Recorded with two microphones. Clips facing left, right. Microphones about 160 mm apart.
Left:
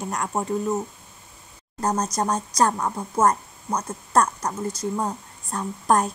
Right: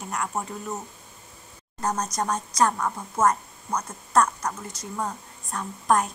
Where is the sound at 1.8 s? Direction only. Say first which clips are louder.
Left 3 dB; 35° left (ahead or behind).